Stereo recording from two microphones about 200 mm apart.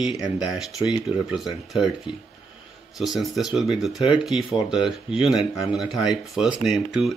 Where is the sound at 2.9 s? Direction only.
Centre (ahead or behind).